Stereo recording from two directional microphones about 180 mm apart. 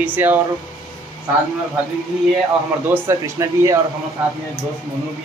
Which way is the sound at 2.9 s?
15° right (ahead or behind).